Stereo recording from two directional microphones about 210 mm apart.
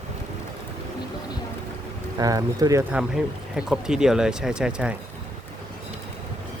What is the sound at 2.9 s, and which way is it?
Speech, 5° right (ahead or behind).